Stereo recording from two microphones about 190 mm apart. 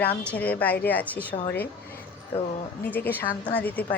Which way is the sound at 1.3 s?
35° left (ahead or behind).